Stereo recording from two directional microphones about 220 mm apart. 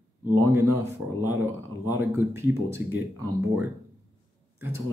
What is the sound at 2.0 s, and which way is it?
Speech, 10° right (ahead or behind).